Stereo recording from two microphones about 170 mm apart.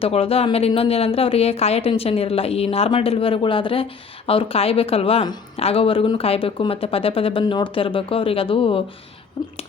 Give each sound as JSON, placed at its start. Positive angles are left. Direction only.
{"t": 0.0, "sound": "a woman's voice", "side_deg": 35}